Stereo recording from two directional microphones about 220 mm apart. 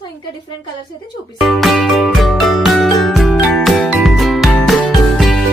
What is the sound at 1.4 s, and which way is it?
Music, centre (ahead or behind).